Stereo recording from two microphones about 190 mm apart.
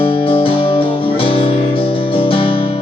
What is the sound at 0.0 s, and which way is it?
Music, 30° left (ahead or behind).